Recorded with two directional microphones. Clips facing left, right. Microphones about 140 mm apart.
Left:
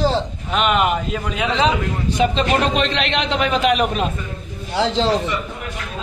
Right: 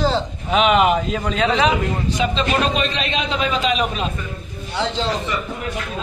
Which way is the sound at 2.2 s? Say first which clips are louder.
Left 3 dB; 65° left (ahead or behind).